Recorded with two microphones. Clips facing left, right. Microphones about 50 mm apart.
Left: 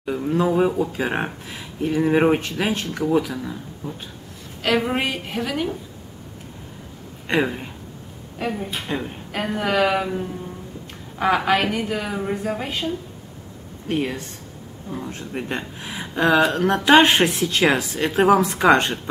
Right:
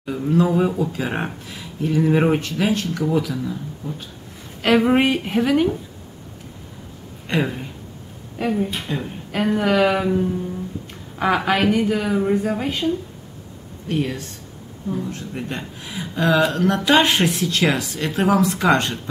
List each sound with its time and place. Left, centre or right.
0.0 s speech: centre
4.6 s a woman's voice: centre
7.2 s speech: centre
8.4 s speech: centre
13.8 s speech: centre